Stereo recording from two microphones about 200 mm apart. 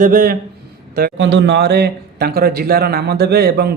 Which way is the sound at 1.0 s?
55° right (ahead or behind).